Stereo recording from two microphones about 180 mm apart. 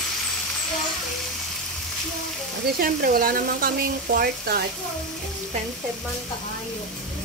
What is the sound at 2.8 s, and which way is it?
Speech, 55° right (ahead or behind).